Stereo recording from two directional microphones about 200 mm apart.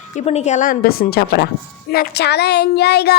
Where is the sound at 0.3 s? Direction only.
35° left (ahead or behind).